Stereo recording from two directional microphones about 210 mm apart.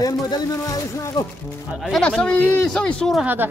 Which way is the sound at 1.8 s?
Centre (ahead or behind).